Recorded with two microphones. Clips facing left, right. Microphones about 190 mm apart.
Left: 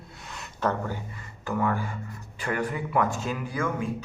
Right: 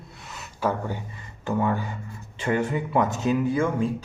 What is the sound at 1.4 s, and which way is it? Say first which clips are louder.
Speech: right 2 dB; 25° right (ahead or behind).